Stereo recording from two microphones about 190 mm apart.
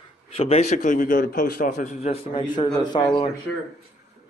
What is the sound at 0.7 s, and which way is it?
A man's voice, 45° left (ahead or behind).